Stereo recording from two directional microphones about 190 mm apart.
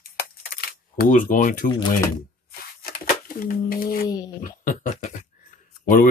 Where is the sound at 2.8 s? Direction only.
50° left (ahead or behind).